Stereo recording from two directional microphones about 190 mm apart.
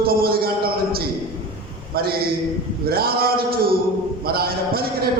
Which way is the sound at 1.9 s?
55° right (ahead or behind).